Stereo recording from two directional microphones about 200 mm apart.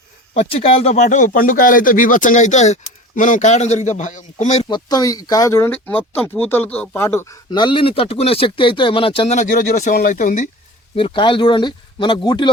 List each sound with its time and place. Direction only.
0.3 s speech: 30° left (ahead or behind)
4.7 s speech: 20° left (ahead or behind)
7.5 s speech: 25° left (ahead or behind); by 10.5 s 40° left (ahead or behind)
10.9 s speech: 25° left (ahead or behind)